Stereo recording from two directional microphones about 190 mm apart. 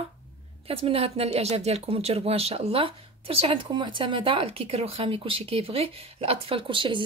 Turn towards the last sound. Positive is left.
turn(degrees=-25)  # may be behind; listen again after turning